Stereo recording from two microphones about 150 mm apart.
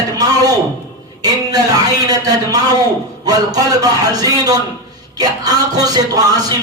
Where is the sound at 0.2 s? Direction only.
25° right (ahead or behind).